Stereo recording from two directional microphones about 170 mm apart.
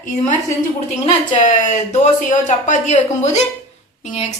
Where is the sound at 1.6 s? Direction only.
45° left (ahead or behind).